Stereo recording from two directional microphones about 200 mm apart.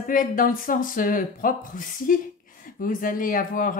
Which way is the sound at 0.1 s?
45° left (ahead or behind).